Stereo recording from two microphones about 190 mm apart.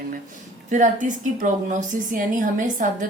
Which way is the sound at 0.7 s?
40° right (ahead or behind).